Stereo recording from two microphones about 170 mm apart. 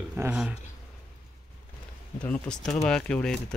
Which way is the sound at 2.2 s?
5° left (ahead or behind).